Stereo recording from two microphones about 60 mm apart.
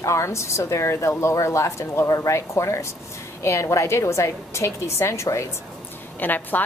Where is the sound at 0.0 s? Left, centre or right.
Left.